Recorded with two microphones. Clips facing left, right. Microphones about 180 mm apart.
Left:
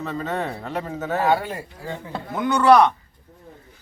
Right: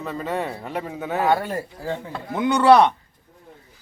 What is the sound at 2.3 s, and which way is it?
Speech, 25° right (ahead or behind).